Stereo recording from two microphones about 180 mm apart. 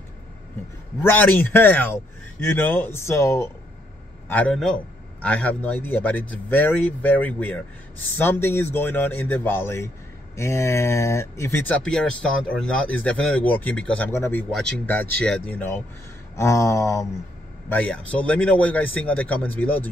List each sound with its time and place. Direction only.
1.0 s speech: 10° left (ahead or behind)